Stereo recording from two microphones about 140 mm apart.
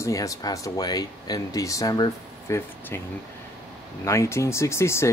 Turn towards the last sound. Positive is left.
turn(degrees=20)  # may be behind; listen again after turning